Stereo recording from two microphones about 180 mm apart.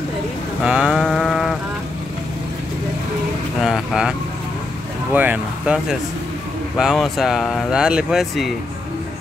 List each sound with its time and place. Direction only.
0.7 s a sound: 5° right (ahead or behind)
3.6 s vehicle: 5° right (ahead or behind)
5.1 s vehicle: 10° right (ahead or behind)
6.8 s speech: centre (ahead or behind)